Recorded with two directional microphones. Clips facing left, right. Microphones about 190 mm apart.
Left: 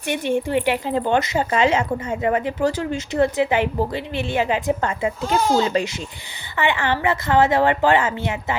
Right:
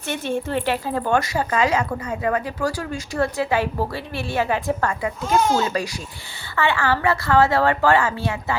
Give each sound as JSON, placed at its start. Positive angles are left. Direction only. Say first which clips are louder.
{"t": 0.1, "sound": "a woman's voice", "louder": "left 3 dB", "side_deg": 15}